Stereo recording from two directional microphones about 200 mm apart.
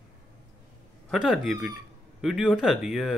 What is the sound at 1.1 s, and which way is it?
Speech, centre (ahead or behind).